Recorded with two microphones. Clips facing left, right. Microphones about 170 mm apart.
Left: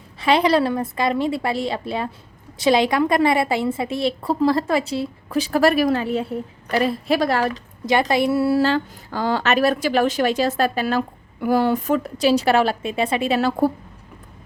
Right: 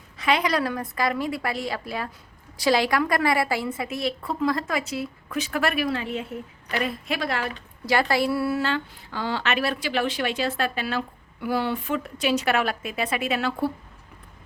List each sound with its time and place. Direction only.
0.2 s a woman's voice: 30° left (ahead or behind)
7.9 s a woman's voice: 20° left (ahead or behind); by 13.7 s 40° left (ahead or behind)